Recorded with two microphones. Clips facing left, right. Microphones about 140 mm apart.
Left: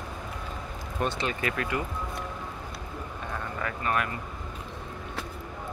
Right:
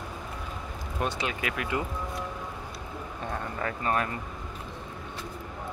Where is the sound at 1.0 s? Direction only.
10° right (ahead or behind).